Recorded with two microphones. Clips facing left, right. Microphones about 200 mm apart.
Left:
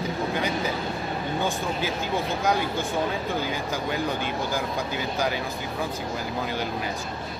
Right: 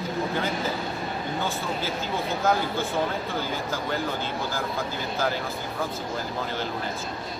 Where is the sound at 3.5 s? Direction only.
15° left (ahead or behind).